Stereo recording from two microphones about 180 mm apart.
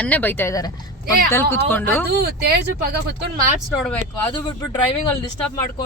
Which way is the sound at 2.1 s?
60° right (ahead or behind).